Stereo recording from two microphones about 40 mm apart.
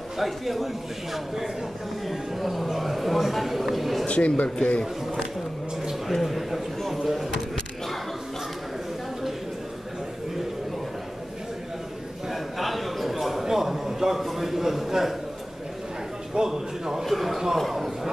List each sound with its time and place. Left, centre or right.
0.2 s a man's voice: centre
4.1 s a man's voice: left
6.0 s a man's voice: centre
7.3 s a sound: centre
12.3 s a sound: centre
16.3 s a man's voice: centre
17.0 s speech: centre